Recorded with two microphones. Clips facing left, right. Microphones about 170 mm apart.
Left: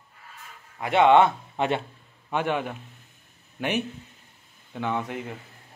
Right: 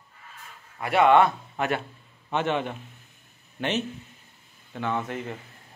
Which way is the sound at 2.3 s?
10° left (ahead or behind).